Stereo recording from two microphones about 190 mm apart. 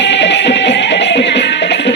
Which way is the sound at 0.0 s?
65° left (ahead or behind).